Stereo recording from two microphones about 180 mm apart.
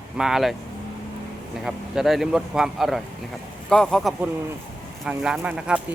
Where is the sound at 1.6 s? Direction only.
Centre (ahead or behind).